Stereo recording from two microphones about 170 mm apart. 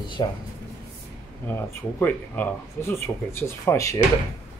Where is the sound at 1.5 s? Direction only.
10° left (ahead or behind).